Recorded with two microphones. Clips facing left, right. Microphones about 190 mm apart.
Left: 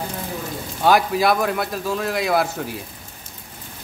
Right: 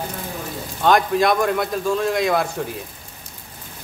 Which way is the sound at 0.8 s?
5° left (ahead or behind).